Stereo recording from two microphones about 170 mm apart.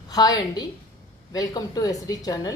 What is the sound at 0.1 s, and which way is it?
A woman's voice, 25° left (ahead or behind).